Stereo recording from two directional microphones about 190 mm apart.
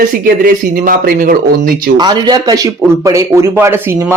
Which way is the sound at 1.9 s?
20° right (ahead or behind).